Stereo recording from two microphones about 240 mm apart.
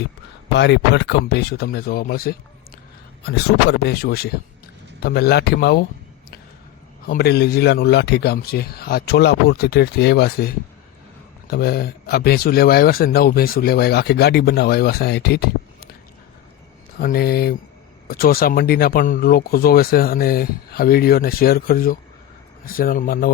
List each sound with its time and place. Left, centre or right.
0.5 s speech: left
7.0 s speech: left
17.0 s speech: left